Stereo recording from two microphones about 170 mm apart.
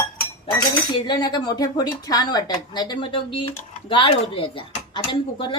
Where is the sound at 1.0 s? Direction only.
25° left (ahead or behind).